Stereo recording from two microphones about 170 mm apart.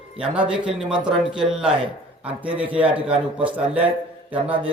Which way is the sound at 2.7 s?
5° right (ahead or behind).